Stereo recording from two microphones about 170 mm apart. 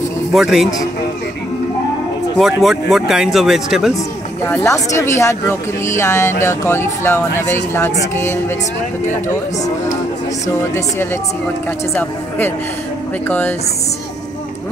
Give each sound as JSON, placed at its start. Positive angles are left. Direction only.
{"t": 0.3, "sound": "speech", "side_deg": 0}
{"t": 2.3, "sound": "speech", "side_deg": 0}
{"t": 4.5, "sound": "a woman's voice", "side_deg": 15}
{"t": 11.9, "sound": "a woman's voice", "side_deg": 10}